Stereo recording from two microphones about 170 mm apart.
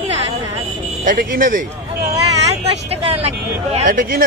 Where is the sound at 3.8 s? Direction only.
55° right (ahead or behind).